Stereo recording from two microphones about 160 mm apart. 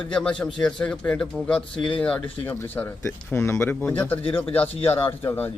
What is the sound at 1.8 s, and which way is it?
Speech, 30° left (ahead or behind).